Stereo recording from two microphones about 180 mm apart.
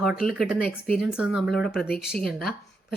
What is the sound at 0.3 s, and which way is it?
Speech, centre (ahead or behind).